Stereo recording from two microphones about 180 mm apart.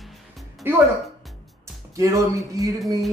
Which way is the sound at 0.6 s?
10° right (ahead or behind).